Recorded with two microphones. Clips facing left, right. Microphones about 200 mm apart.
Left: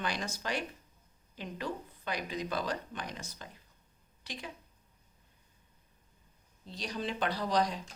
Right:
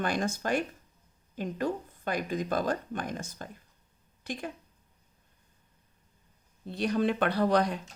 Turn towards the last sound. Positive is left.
turn(degrees=-60)  # may be behind; listen again after turning